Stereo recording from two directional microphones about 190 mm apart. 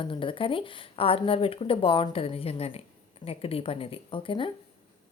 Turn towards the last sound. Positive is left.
turn(degrees=25)  # may be behind; listen again after turning